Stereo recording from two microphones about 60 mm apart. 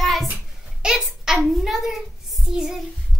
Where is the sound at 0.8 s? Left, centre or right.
Centre.